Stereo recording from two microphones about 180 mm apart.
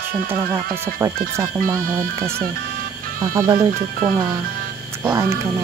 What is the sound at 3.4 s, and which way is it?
Speech, 20° right (ahead or behind).